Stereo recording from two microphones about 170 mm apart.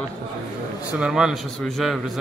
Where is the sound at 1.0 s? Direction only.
5° right (ahead or behind).